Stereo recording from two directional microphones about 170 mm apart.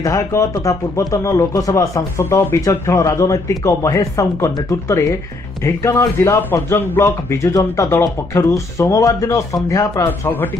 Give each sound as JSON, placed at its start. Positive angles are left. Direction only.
{"t": 0.0, "sound": "a man's voice", "side_deg": 20}